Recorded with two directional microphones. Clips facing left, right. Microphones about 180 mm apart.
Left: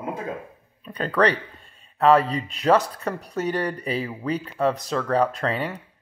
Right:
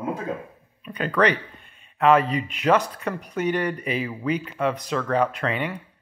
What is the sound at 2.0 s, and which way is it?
Speech, 35° left (ahead or behind).